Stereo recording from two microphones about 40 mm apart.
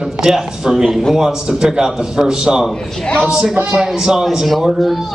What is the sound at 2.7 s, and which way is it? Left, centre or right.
Speech, left.